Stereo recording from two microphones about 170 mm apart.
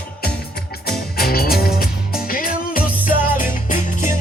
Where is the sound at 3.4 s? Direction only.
50° left (ahead or behind).